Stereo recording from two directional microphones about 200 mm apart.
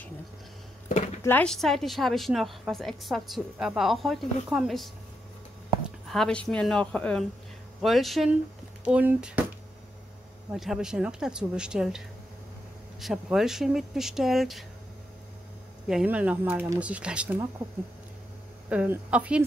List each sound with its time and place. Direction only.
0.8 s a sound: 35° left (ahead or behind)
1.2 s a woman's voice: 5° left (ahead or behind)
10.5 s a woman's voice: centre (ahead or behind)
13.0 s a woman's voice: centre (ahead or behind)
15.9 s speech: 5° right (ahead or behind)
18.7 s a woman's voice: 5° right (ahead or behind)